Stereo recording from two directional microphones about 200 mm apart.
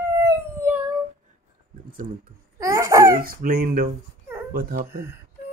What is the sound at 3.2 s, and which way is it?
Speech, 45° right (ahead or behind).